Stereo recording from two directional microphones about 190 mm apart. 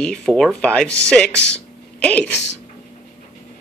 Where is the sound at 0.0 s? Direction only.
5° left (ahead or behind).